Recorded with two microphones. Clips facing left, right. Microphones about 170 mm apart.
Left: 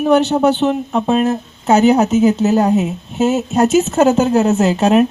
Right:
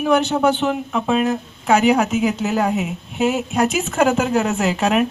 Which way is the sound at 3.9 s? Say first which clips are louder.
Left 2 dB; 30° left (ahead or behind).